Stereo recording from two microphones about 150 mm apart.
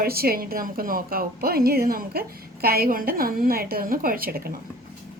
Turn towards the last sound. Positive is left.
turn(degrees=-85)